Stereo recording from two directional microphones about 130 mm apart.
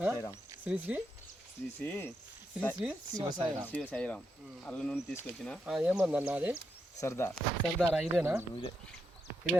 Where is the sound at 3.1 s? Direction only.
30° right (ahead or behind).